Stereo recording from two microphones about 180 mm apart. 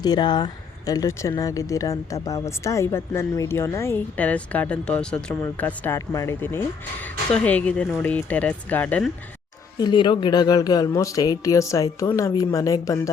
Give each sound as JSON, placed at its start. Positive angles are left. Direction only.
{"t": 0.0, "sound": "speech", "side_deg": 25}
{"t": 9.7, "sound": "speech", "side_deg": 25}